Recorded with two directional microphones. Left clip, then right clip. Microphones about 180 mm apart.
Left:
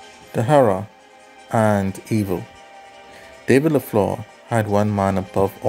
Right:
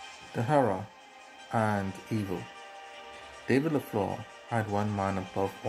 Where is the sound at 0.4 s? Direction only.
55° left (ahead or behind).